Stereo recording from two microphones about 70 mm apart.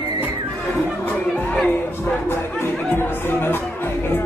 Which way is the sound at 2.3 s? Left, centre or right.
Left.